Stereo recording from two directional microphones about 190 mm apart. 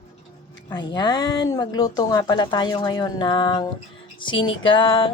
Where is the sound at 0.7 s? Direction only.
20° left (ahead or behind).